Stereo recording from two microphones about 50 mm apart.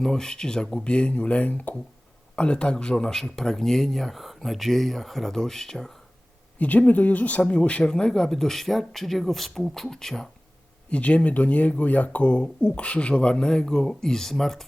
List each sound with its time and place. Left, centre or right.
0.0 s speech: centre
6.6 s speech: left; by 10.2 s centre
10.8 s speech: left; by 14.6 s centre